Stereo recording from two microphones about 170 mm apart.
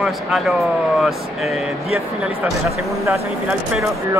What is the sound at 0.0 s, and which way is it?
Speech, centre (ahead or behind).